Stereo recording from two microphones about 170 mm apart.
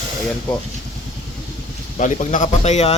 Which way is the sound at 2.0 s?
45° left (ahead or behind).